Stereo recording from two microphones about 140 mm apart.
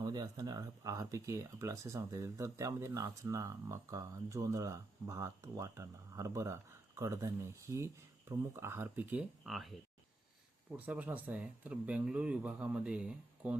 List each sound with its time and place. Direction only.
0.0 s speech: 30° right (ahead or behind); by 9.2 s 15° right (ahead or behind)
9.5 s speech: centre (ahead or behind)
10.8 s speech: 10° right (ahead or behind)